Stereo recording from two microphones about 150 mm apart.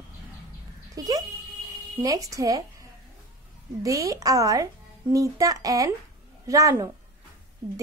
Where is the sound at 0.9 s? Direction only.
25° right (ahead or behind).